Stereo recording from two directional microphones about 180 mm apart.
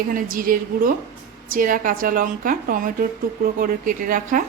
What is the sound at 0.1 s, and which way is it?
A woman's voice, 50° right (ahead or behind).